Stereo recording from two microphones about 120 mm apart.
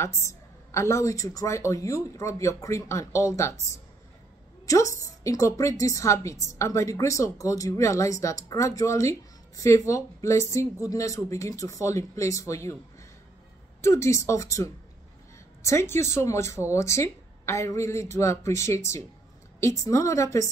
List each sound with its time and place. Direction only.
0.0 s a woman's voice: 25° left (ahead or behind)
4.6 s a woman's voice: 25° left (ahead or behind)
13.7 s a woman's voice: 25° left (ahead or behind)